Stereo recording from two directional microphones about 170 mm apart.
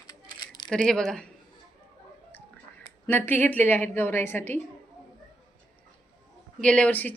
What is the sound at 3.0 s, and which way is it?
A woman's voice, 10° left (ahead or behind).